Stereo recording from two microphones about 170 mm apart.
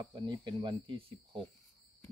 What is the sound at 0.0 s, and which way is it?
Speech, 20° right (ahead or behind).